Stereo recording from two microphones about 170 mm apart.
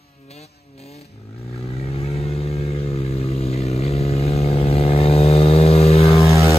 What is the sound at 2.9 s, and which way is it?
Vehicle, 35° left (ahead or behind).